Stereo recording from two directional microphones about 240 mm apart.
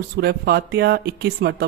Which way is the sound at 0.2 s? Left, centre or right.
Right.